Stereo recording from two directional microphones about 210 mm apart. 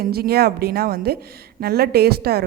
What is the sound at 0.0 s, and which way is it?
A woman's voice, 45° right (ahead or behind).